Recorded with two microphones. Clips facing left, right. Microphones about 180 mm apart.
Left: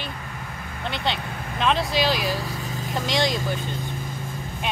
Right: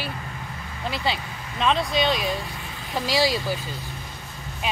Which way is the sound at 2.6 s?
40° left (ahead or behind).